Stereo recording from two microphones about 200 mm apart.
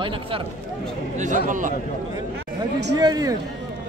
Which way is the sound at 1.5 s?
40° right (ahead or behind).